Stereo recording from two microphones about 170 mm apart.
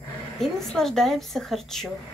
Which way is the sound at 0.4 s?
Centre (ahead or behind).